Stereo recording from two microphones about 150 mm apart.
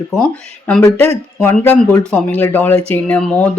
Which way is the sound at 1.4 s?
15° left (ahead or behind).